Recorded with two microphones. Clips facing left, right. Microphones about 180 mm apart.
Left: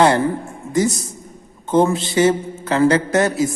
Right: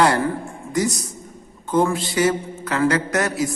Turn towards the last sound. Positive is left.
turn(degrees=25)  # may be behind; listen again after turning